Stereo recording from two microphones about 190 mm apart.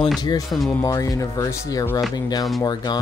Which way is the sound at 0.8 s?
20° left (ahead or behind).